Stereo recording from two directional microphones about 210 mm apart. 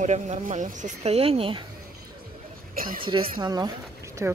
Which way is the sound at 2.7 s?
45° right (ahead or behind).